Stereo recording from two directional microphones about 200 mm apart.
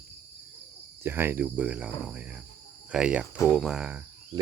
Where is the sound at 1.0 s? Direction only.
10° right (ahead or behind).